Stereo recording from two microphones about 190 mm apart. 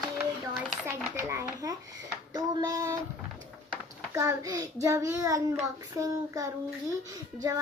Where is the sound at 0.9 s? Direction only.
10° right (ahead or behind).